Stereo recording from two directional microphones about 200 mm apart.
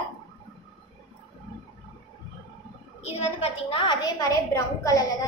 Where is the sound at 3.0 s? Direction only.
30° left (ahead or behind).